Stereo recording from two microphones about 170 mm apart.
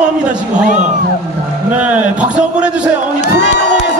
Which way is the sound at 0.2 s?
5° right (ahead or behind).